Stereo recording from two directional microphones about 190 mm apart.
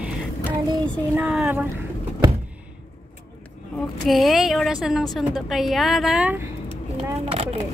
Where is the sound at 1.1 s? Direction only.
5° right (ahead or behind).